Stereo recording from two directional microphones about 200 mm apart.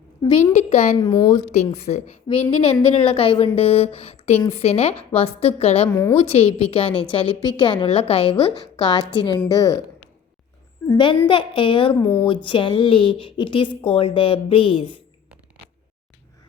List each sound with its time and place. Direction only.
0.2 s a woman's voice: 20° left (ahead or behind)
0.5 s a woman's voice: 30° left (ahead or behind)
2.9 s a woman's voice: 30° left (ahead or behind)
10.8 s a woman's voice: 25° left (ahead or behind)